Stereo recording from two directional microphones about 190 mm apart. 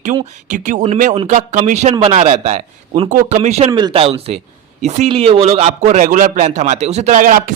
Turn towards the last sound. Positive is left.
turn(degrees=-45)  # may be behind; listen again after turning